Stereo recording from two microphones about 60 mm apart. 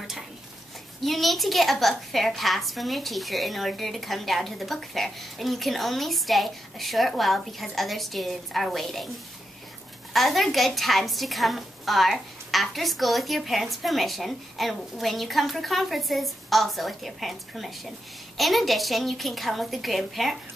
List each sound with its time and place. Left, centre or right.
1.0 s a woman's voice: centre
10.1 s a woman's voice: centre